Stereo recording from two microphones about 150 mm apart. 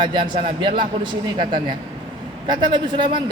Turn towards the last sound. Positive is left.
turn(degrees=-30)  # may be behind; listen again after turning